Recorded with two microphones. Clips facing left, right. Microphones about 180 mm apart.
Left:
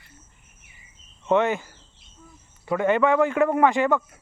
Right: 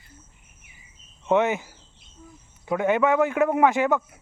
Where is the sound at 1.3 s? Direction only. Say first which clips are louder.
Even; 15° right (ahead or behind).